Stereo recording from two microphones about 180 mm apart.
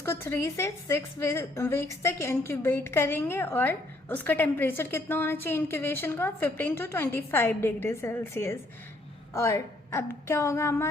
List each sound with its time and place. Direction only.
0.0 s a woman's voice: 15° left (ahead or behind)